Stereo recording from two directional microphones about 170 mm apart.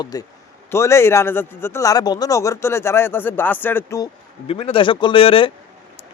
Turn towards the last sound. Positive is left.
turn(degrees=30)  # may be behind; listen again after turning